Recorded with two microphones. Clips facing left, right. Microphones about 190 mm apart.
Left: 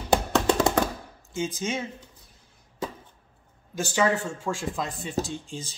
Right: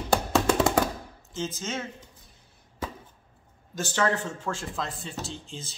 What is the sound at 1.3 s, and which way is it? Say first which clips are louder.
Speech: left 3 dB; 10° left (ahead or behind).